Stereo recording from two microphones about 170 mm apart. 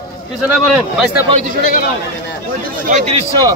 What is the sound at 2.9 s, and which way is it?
Speech, 45° right (ahead or behind).